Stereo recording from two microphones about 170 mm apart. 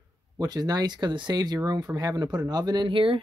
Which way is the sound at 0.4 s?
25° right (ahead or behind).